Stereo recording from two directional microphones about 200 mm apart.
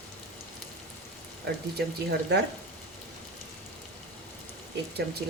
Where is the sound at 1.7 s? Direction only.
55° right (ahead or behind).